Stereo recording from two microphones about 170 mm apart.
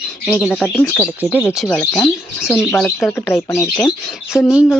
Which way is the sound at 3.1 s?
15° left (ahead or behind).